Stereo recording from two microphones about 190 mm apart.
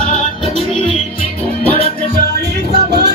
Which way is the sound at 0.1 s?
40° left (ahead or behind).